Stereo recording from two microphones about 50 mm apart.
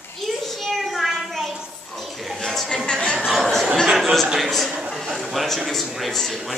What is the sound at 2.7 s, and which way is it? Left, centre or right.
Speech, centre.